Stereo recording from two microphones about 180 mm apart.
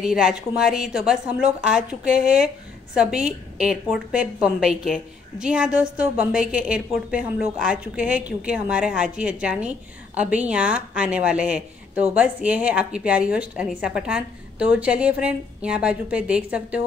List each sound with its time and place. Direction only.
0.0 s a woman's voice: 5° right (ahead or behind)